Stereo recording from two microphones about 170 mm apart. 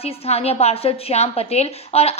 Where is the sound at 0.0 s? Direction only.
35° left (ahead or behind).